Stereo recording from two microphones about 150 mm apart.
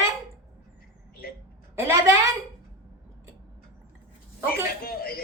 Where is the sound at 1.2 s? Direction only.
80° left.